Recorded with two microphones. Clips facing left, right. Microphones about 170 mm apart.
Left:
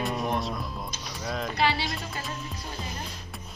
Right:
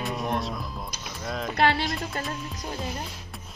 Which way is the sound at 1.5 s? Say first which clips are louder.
Right 4 dB; 55° right (ahead or behind).